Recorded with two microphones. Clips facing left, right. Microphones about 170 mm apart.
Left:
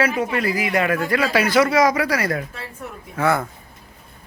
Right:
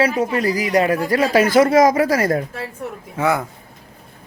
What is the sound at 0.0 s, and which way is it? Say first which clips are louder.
Speech: right 3 dB; 40° right (ahead or behind).